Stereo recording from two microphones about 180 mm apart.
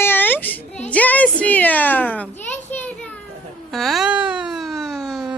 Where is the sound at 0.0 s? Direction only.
10° left (ahead or behind).